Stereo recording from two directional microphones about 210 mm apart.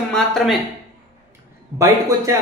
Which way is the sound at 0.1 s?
Centre (ahead or behind).